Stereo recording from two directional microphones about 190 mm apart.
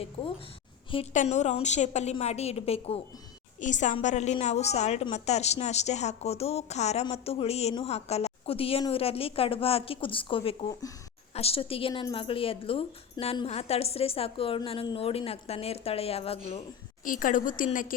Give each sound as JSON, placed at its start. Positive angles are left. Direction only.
{"t": 1.1, "sound": "a woman's voice", "side_deg": 40}